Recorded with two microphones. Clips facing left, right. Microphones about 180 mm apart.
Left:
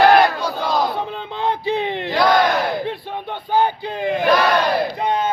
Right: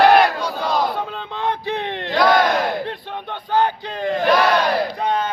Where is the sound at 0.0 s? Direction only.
Centre (ahead or behind).